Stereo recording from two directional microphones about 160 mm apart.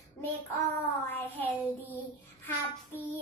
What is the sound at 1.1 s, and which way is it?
Child singing, 10° left (ahead or behind).